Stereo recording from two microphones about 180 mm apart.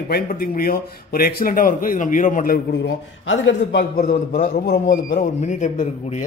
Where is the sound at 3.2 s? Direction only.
80° left; by 5.8 s 45° left (ahead or behind).